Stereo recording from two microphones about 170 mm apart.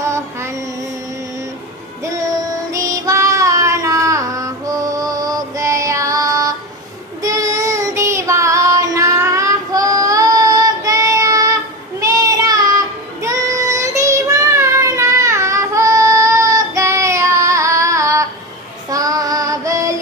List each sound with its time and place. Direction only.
0.0 s music: 15° right (ahead or behind)
2.7 s child singing: 20° right (ahead or behind)